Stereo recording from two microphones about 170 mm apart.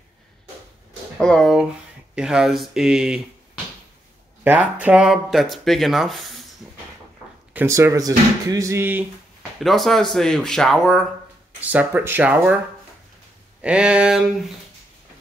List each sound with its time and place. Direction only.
1.2 s speech: 5° left (ahead or behind)
4.5 s speech: 10° right (ahead or behind)
7.5 s speech: 15° right (ahead or behind)
9.6 s speech: centre (ahead or behind)
11.6 s speech: 10° right (ahead or behind)
13.6 s speech: 5° right (ahead or behind)